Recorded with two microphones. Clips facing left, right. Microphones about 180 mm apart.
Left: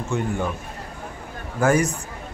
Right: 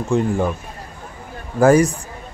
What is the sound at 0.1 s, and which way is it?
Speech, 30° right (ahead or behind).